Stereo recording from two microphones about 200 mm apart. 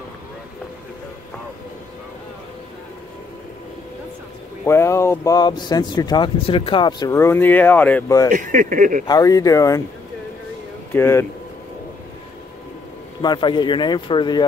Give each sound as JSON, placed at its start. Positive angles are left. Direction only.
{"t": 4.6, "sound": "speech", "side_deg": 15}
{"t": 8.3, "sound": "speech", "side_deg": -40}
{"t": 9.0, "sound": "speech", "side_deg": 20}
{"t": 10.9, "sound": "speech", "side_deg": 10}
{"t": 13.2, "sound": "speech", "side_deg": 20}